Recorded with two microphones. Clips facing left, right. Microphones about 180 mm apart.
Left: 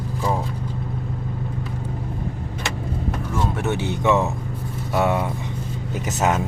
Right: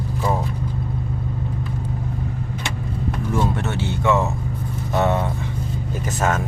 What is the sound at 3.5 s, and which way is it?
Music, 15° left (ahead or behind).